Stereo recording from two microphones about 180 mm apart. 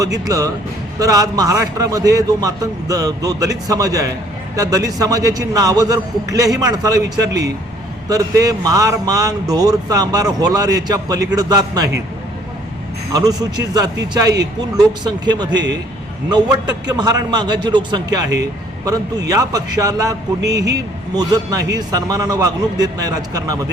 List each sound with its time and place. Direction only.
0.0 s speech: 20° right (ahead or behind)
13.1 s speech: 20° right (ahead or behind)
19.3 s speech: 20° right (ahead or behind)
21.2 s speech: 20° right (ahead or behind)